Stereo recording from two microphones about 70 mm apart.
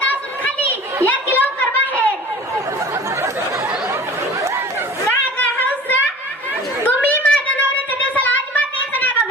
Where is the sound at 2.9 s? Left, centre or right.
Right.